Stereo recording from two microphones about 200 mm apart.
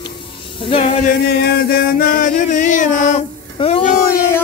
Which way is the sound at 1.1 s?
55° left (ahead or behind).